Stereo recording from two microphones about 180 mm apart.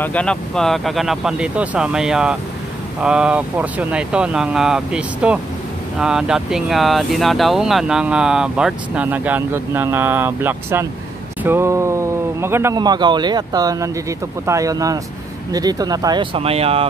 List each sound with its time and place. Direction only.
0.0 s speech: 5° left (ahead or behind); by 16.8 s 35° right (ahead or behind)